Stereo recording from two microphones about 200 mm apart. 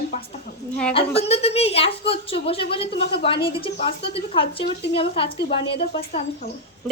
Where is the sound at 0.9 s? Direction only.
30° left (ahead or behind).